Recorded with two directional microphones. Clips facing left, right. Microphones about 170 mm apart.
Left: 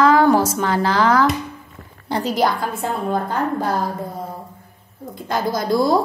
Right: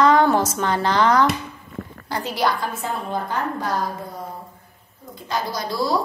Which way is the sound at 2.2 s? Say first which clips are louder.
Left 4 dB; 40° left (ahead or behind).